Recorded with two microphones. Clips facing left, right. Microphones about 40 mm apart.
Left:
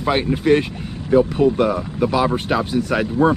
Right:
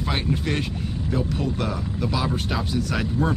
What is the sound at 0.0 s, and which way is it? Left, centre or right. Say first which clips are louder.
Speech: left 7 dB; centre.